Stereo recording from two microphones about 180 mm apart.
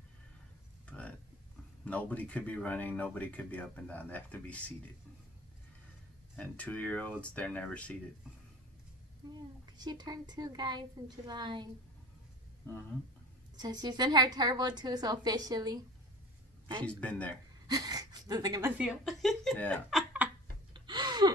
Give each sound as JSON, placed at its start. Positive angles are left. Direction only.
{"t": 0.8, "sound": "a sound", "side_deg": 5}
{"t": 1.9, "sound": "speech", "side_deg": 10}
{"t": 6.3, "sound": "speech", "side_deg": 5}
{"t": 9.7, "sound": "a woman's voice", "side_deg": -25}
{"t": 13.6, "sound": "a woman's voice", "side_deg": -25}
{"t": 16.8, "sound": "speech", "side_deg": 10}
{"t": 17.6, "sound": "speech", "side_deg": -20}
{"t": 18.8, "sound": "speech", "side_deg": -5}
{"t": 20.7, "sound": "gasp", "side_deg": -25}